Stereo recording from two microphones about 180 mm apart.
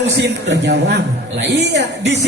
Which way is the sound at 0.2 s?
70° right (ahead or behind).